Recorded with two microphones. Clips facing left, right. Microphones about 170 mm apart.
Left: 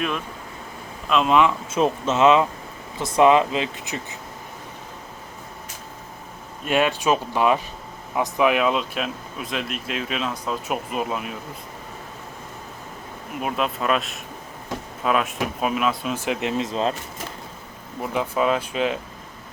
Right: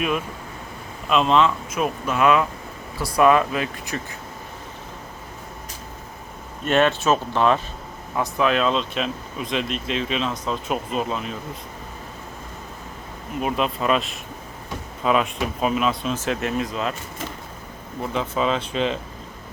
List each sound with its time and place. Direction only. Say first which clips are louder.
1.1 s speech: even; 5° left (ahead or behind)
1.7 s speech: left 3 dB; 25° left (ahead or behind)
6.7 s speech: right 2 dB; 10° left (ahead or behind)
13.4 s speech: right 2 dB; centre (ahead or behind); by 16.9 s 30° left (ahead or behind)
18.0 s speech: left 1 dB; 15° left (ahead or behind)